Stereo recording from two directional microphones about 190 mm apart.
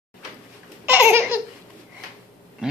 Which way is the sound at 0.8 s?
10° right (ahead or behind).